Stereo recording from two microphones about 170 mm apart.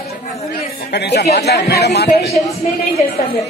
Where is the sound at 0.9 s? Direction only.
80° left.